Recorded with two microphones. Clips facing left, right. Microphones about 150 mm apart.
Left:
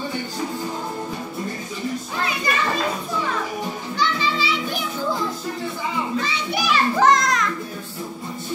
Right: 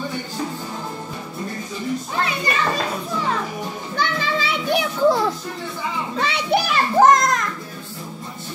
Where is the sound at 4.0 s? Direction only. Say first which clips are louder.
Even; 55° right (ahead or behind).